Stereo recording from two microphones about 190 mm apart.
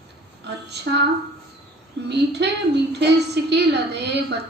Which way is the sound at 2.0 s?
65° right (ahead or behind).